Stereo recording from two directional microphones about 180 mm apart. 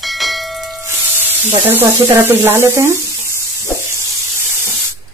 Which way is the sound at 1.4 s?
15° right (ahead or behind).